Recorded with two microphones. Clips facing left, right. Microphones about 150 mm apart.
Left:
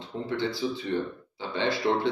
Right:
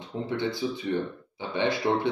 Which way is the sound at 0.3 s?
20° right (ahead or behind).